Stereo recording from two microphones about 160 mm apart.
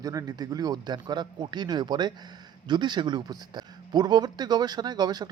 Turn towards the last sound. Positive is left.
turn(degrees=-25)  # may be behind; listen again after turning